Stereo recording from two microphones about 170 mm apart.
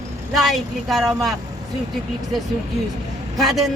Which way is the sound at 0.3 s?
Centre (ahead or behind).